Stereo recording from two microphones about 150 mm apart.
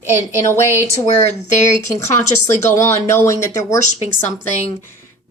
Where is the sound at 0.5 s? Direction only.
15° left (ahead or behind).